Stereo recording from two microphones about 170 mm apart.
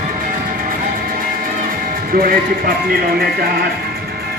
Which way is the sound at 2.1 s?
60° right (ahead or behind).